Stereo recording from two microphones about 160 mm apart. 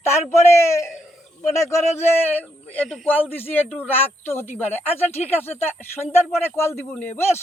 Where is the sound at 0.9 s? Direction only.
Centre (ahead or behind).